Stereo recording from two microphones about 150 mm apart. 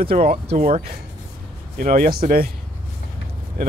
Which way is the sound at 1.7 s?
70° right (ahead or behind).